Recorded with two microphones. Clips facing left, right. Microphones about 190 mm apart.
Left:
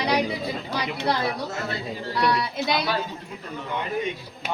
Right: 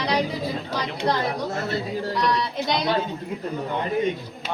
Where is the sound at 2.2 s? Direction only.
5° left (ahead or behind).